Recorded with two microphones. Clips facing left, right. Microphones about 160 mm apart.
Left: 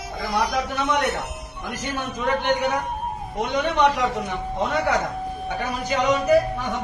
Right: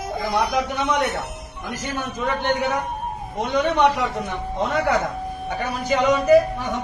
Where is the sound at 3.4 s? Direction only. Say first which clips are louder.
Right 2 dB; centre (ahead or behind).